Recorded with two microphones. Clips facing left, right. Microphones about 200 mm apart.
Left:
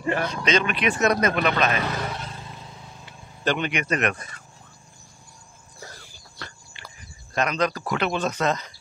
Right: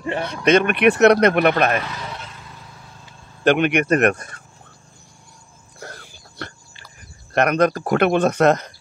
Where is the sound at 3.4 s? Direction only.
60° right (ahead or behind).